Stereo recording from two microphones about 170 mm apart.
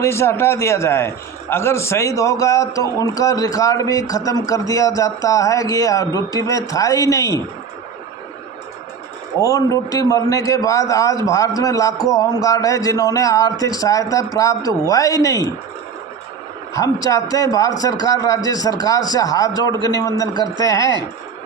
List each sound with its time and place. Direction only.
0.0 s a man's voice: 15° left (ahead or behind)
9.4 s a man's voice: 20° left (ahead or behind)
16.7 s a man's voice: 20° left (ahead or behind)